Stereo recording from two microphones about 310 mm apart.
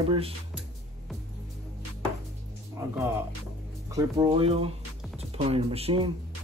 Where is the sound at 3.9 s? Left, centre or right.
Centre.